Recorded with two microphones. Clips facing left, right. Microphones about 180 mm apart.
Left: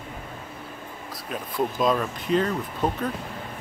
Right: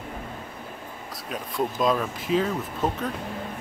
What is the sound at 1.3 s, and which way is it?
Speech, centre (ahead or behind).